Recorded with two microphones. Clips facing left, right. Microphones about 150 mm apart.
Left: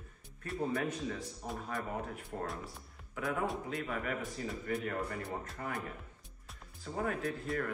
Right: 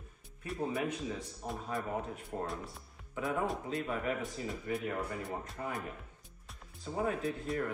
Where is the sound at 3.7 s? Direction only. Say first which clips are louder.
Right 2 dB; 20° right (ahead or behind).